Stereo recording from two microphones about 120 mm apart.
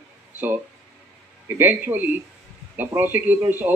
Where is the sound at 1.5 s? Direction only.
15° right (ahead or behind).